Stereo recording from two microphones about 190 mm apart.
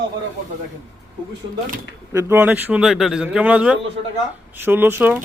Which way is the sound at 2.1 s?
10° right (ahead or behind).